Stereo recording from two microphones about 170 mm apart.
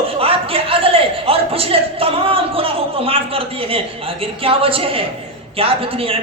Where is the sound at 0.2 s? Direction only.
35° right (ahead or behind).